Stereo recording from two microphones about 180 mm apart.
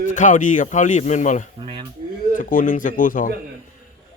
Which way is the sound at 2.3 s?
50° left (ahead or behind).